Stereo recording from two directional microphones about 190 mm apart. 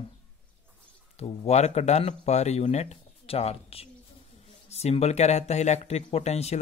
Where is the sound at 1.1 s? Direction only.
30° left (ahead or behind).